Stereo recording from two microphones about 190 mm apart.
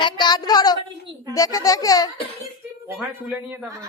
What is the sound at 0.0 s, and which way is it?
Speech, 25° left (ahead or behind).